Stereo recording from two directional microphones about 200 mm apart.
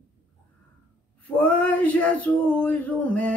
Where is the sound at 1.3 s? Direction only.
5° left (ahead or behind).